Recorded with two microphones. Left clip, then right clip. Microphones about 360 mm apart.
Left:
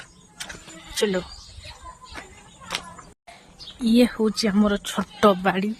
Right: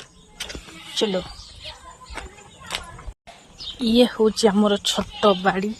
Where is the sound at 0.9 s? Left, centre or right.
Centre.